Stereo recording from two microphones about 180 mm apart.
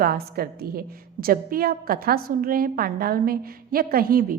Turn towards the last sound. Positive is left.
turn(degrees=-55)  # may be behind; listen again after turning